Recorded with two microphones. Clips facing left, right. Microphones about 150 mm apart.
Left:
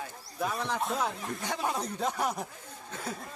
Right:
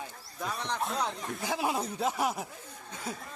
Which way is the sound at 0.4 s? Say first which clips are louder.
Left 2 dB; centre (ahead or behind).